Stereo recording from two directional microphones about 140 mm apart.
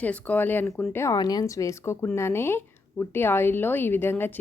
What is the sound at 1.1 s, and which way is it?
A woman's voice, 30° left (ahead or behind).